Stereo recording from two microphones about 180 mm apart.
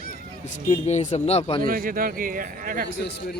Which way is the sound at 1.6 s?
50° right (ahead or behind).